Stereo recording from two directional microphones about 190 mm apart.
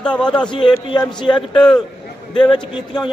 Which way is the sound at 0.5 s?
25° left (ahead or behind).